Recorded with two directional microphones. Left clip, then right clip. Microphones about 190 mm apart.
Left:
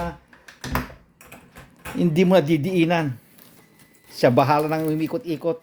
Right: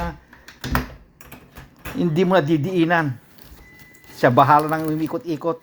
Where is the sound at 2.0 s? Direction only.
20° left (ahead or behind).